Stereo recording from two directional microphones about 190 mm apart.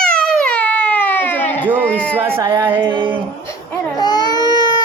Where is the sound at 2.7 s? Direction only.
25° right (ahead or behind).